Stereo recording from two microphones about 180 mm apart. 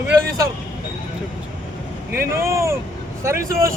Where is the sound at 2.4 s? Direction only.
15° right (ahead or behind).